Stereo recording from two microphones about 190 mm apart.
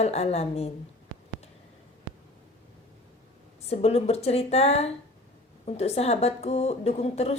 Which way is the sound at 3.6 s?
35° left (ahead or behind).